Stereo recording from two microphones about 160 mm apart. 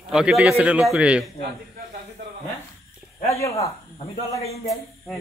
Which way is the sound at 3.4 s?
20° left (ahead or behind).